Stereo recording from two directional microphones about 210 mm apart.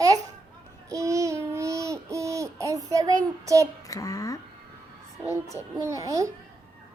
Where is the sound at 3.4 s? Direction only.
15° right (ahead or behind).